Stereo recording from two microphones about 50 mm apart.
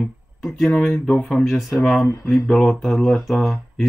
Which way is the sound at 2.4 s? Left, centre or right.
Centre.